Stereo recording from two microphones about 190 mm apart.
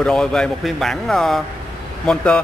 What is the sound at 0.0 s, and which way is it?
A man's voice, 5° left (ahead or behind).